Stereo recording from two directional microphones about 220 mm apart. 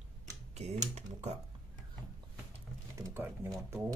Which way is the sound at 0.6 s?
30° right (ahead or behind).